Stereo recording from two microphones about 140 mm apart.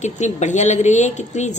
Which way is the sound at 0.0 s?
55° left (ahead or behind).